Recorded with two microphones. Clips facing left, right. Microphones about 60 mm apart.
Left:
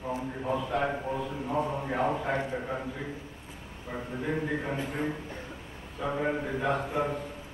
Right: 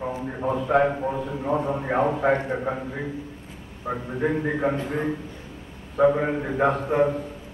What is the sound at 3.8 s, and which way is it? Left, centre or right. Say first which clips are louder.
Speech: right 8 dB; right.